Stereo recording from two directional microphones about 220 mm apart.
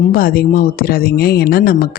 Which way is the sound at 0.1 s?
40° left (ahead or behind).